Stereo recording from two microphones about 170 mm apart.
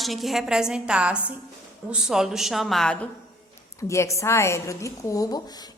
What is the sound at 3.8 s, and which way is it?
A woman's voice, 15° left (ahead or behind).